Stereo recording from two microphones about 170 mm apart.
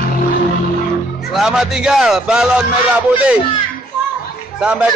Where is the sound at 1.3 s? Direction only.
5° right (ahead or behind).